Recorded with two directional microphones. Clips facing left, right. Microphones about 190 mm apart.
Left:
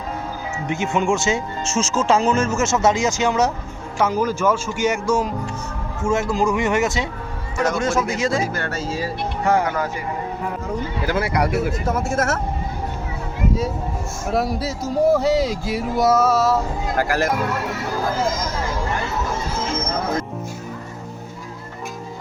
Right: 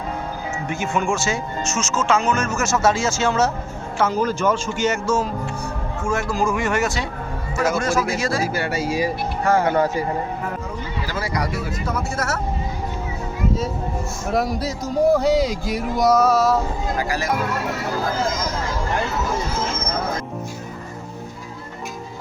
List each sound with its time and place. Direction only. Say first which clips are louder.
0.7 s a man's voice: left 3 dB; 20° left (ahead or behind)
8.5 s speech: right 3 dB; 10° right (ahead or behind)
9.4 s speech: even; 15° left (ahead or behind)
9.6 s speech: right 5 dB; 30° right (ahead or behind)
11.0 s speech: left 5 dB; 60° left (ahead or behind)
14.3 s speech: even; 5° left (ahead or behind)